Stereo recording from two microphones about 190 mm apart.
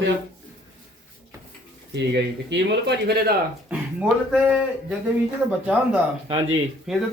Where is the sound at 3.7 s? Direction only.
5° right (ahead or behind).